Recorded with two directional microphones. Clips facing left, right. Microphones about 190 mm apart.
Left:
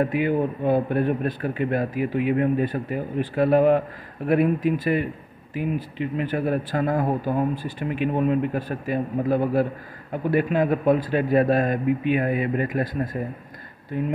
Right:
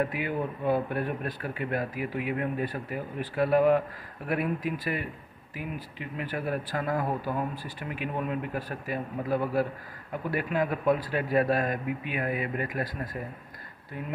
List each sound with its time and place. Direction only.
0.0 s speech: 25° left (ahead or behind)